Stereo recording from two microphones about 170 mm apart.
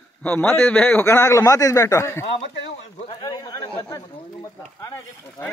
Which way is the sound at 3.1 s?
25° left (ahead or behind).